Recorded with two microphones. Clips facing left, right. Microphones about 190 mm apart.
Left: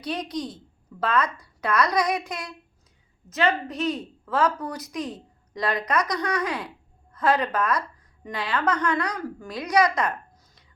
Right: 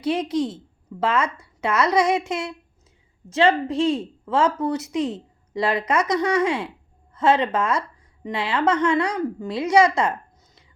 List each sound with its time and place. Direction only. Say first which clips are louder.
0.0 s a woman's voice: right 7 dB; 25° right (ahead or behind)